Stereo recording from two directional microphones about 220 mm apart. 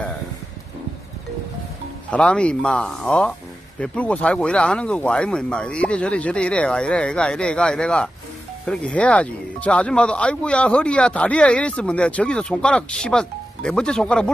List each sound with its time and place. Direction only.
2.0 s speech: 5° left (ahead or behind)